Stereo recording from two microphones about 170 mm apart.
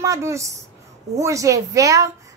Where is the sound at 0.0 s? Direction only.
20° right (ahead or behind).